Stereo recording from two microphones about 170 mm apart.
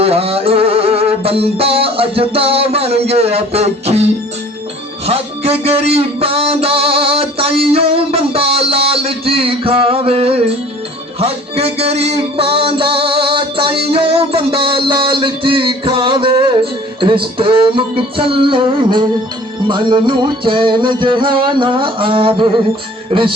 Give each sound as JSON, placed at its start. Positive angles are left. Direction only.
{"t": 0.0, "sound": "music", "side_deg": -35}